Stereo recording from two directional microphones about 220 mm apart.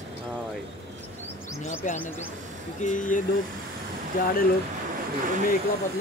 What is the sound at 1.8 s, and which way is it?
Speech, 35° left (ahead or behind).